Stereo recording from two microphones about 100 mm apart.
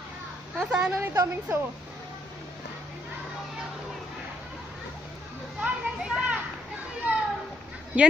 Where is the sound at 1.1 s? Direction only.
35° right (ahead or behind).